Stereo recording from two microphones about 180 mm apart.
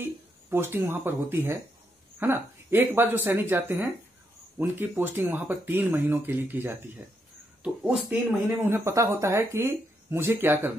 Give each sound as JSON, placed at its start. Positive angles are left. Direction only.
{"t": 0.5, "sound": "speech", "side_deg": -10}